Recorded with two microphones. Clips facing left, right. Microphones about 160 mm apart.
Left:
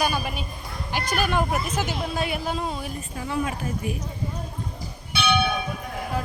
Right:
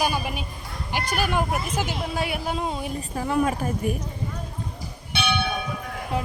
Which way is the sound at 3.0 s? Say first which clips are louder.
Right 6 dB; 45° right (ahead or behind).